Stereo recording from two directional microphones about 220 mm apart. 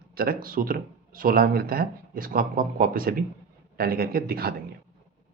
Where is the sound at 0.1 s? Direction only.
40° right (ahead or behind).